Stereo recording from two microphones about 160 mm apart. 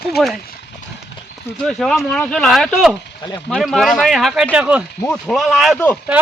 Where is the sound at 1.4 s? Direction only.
5° left (ahead or behind).